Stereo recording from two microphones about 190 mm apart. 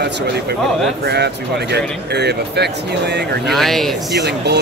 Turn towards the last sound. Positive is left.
turn(degrees=-65)  # may be behind; listen again after turning